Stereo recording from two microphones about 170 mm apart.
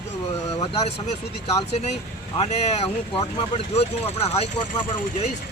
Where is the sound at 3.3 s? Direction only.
35° left (ahead or behind).